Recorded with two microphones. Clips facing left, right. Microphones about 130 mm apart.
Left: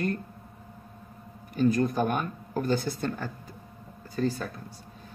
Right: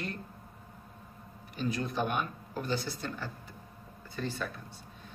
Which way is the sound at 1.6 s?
45° left (ahead or behind).